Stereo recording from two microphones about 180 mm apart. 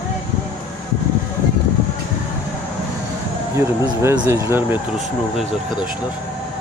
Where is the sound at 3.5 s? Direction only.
15° right (ahead or behind).